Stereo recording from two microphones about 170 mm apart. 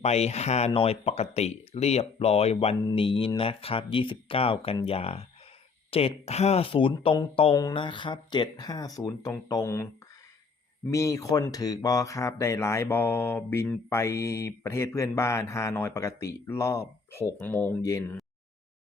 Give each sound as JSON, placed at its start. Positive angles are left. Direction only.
{"t": 0.0, "sound": "speech", "side_deg": 40}